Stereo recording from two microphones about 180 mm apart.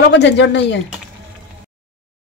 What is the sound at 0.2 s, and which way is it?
Speech, 80° left.